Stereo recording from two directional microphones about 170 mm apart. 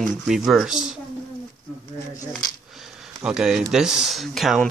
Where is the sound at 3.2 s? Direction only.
5° right (ahead or behind).